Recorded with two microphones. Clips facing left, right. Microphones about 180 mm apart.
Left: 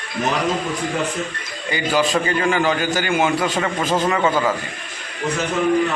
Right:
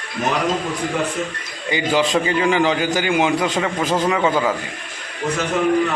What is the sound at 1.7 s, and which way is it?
A man's voice, 15° right (ahead or behind).